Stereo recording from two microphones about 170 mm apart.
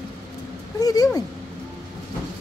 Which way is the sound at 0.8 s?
20° left (ahead or behind).